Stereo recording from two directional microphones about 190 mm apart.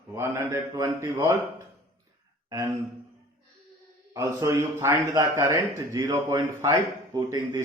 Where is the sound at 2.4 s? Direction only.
15° right (ahead or behind).